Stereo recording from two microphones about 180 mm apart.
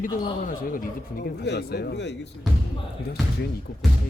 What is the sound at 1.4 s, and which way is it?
Speech, 70° left (ahead or behind).